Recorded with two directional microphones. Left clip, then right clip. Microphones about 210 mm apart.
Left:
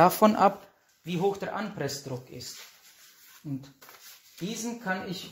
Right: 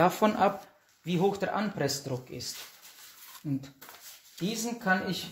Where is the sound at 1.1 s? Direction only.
10° left (ahead or behind).